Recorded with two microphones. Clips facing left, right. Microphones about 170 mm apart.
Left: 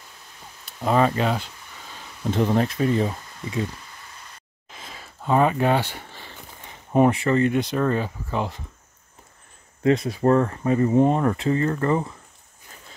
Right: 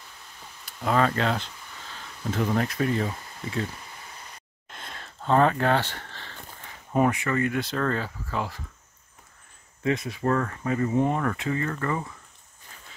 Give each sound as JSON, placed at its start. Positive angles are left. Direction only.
{"t": 0.8, "sound": "speech", "side_deg": 15}
{"t": 2.3, "sound": "speech", "side_deg": 25}
{"t": 4.6, "sound": "a sound", "side_deg": 0}
{"t": 7.6, "sound": "speech", "side_deg": 15}
{"t": 9.8, "sound": "speech", "side_deg": 35}